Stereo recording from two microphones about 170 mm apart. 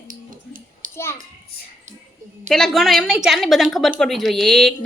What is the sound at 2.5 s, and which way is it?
A woman's voice, centre (ahead or behind).